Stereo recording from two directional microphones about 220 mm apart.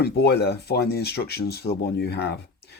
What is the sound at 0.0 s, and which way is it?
Speech, 45° left (ahead or behind).